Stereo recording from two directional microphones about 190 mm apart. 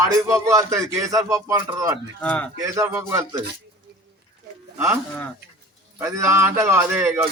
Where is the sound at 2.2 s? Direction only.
5° left (ahead or behind).